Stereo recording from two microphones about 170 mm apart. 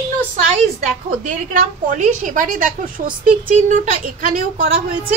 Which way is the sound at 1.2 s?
50° right (ahead or behind).